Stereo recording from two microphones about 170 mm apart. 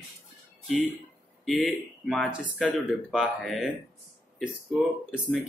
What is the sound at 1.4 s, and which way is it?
Speech, centre (ahead or behind).